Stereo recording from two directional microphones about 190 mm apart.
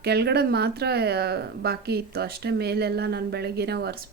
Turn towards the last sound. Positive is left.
turn(degrees=-60)  # may be behind; listen again after turning